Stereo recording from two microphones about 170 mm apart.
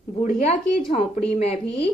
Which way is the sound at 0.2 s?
40° left (ahead or behind).